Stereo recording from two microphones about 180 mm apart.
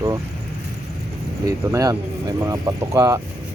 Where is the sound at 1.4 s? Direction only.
20° right (ahead or behind).